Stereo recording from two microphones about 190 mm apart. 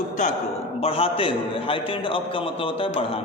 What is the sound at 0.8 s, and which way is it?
A man's voice, 30° left (ahead or behind).